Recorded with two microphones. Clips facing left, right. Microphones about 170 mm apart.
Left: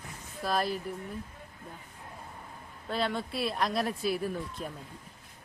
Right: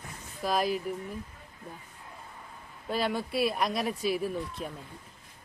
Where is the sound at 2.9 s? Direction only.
5° right (ahead or behind).